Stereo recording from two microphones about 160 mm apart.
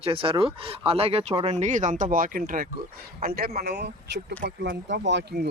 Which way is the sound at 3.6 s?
90° right.